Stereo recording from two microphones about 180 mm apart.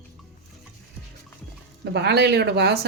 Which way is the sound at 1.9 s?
65° right (ahead or behind).